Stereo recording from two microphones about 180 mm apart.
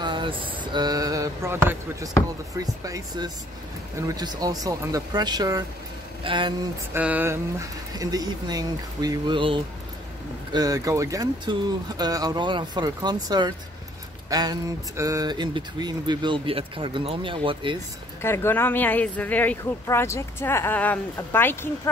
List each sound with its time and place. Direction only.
0.0 s speech: 25° right (ahead or behind)
6.9 s speech: 10° right (ahead or behind); by 17.7 s 30° right (ahead or behind)
18.2 s speech: 15° left (ahead or behind)